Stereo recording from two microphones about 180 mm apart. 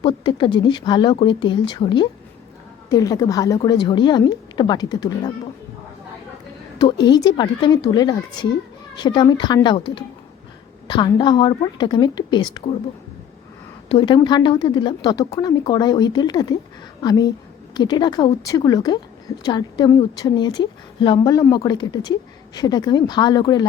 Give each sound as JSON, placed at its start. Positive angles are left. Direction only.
{"t": 0.0, "sound": "a woman's voice", "side_deg": 25}
{"t": 6.7, "sound": "a woman's voice", "side_deg": 25}
{"t": 10.8, "sound": "a woman's voice", "side_deg": 25}
{"t": 13.8, "sound": "a woman's voice", "side_deg": 30}